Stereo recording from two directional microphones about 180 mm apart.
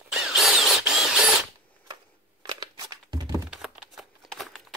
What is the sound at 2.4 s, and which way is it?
Crumpling, 20° right (ahead or behind).